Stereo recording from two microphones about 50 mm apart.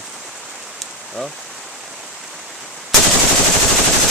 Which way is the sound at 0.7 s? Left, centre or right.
Centre.